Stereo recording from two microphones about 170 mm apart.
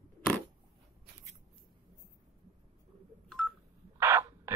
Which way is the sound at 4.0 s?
15° right (ahead or behind).